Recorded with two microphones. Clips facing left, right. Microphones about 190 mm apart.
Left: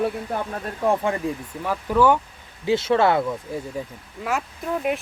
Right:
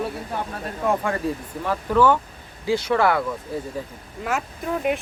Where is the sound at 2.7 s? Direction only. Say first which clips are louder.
Left 1 dB; 25° left (ahead or behind).